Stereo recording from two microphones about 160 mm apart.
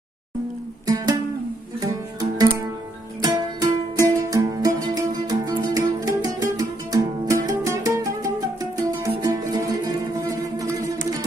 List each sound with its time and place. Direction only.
0.8 s music: 25° right (ahead or behind)
3.2 s music: 25° right (ahead or behind)